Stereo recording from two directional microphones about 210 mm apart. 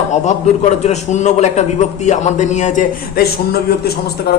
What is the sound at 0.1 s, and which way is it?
A man's voice, 35° left (ahead or behind).